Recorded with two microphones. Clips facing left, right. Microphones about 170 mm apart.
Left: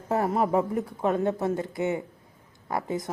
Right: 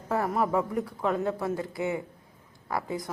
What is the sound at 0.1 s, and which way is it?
Speech, 25° left (ahead or behind).